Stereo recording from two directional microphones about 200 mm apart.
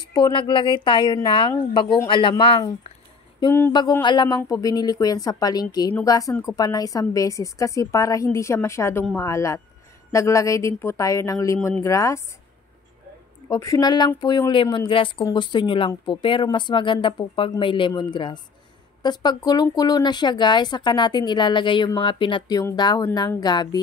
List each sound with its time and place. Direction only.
0.1 s speech: 25° left (ahead or behind)
3.3 s a woman's voice: 15° left (ahead or behind)
13.5 s speech: 15° left (ahead or behind)